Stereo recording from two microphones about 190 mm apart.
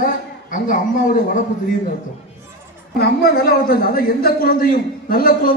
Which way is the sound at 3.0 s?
55° left (ahead or behind).